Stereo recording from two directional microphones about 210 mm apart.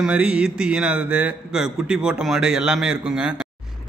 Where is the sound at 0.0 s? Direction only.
5° right (ahead or behind).